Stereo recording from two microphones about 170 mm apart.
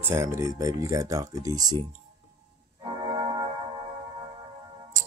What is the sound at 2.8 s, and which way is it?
Organ, 30° right (ahead or behind).